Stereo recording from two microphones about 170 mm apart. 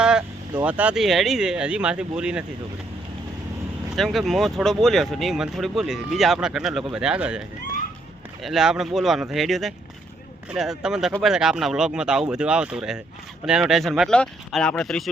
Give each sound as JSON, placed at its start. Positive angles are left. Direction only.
{"t": 0.0, "sound": "speech", "side_deg": -5}
{"t": 3.9, "sound": "speech", "side_deg": 0}
{"t": 8.4, "sound": "speech", "side_deg": -5}